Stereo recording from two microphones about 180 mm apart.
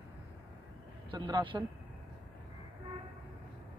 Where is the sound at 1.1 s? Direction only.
25° right (ahead or behind).